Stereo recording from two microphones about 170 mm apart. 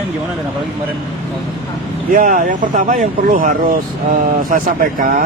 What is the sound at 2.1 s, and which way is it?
Speech, 50° right (ahead or behind).